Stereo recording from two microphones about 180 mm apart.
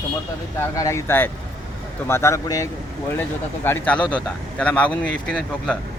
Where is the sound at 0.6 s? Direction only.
15° left (ahead or behind).